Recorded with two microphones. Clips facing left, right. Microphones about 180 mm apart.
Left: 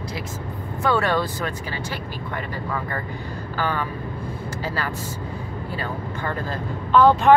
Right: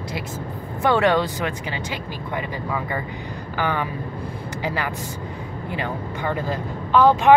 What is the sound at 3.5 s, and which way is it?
Speech, 15° right (ahead or behind).